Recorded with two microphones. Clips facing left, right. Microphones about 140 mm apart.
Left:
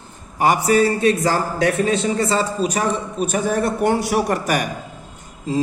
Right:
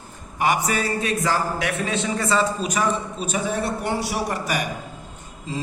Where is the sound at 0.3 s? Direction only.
35° left (ahead or behind).